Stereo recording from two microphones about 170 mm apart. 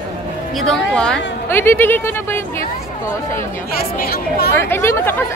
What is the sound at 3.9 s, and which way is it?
Speech, 60° left (ahead or behind).